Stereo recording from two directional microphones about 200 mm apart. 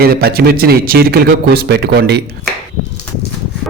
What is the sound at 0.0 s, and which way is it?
Speech, 50° right (ahead or behind).